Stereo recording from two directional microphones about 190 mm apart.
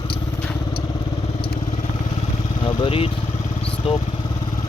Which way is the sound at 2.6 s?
25° left (ahead or behind).